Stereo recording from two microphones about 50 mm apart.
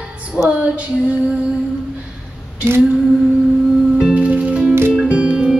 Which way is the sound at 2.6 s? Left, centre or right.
Right.